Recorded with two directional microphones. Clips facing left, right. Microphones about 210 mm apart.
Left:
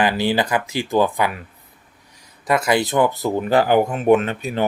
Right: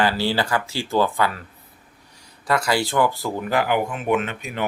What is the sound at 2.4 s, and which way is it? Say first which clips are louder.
Speech: left 3 dB; 20° left (ahead or behind).